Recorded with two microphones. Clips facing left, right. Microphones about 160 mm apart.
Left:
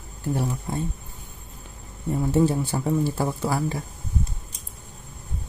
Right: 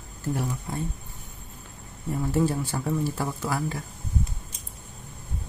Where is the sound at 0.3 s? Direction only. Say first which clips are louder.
Left 3 dB; 25° left (ahead or behind).